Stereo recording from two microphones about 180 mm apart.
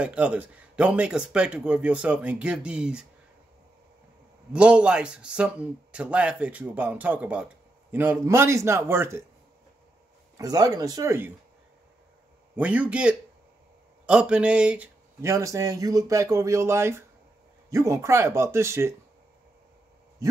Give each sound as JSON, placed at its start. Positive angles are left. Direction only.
{"t": 0.0, "sound": "speech", "side_deg": -5}
{"t": 4.5, "sound": "speech", "side_deg": -5}
{"t": 10.3, "sound": "speech", "side_deg": -20}
{"t": 12.5, "sound": "a man's voice", "side_deg": -10}
{"t": 15.3, "sound": "speech", "side_deg": -20}
{"t": 20.2, "sound": "a sound", "side_deg": -15}